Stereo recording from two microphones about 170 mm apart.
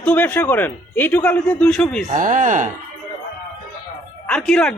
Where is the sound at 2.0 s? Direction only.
50° right (ahead or behind).